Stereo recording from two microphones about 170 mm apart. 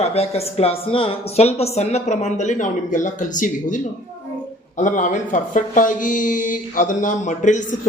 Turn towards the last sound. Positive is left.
turn(degrees=45)  # may be behind; listen again after turning